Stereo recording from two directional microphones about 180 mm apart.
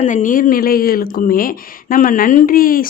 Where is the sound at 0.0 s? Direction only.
45° left (ahead or behind).